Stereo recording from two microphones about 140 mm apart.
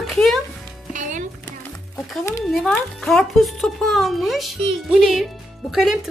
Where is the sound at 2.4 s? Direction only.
5° left (ahead or behind).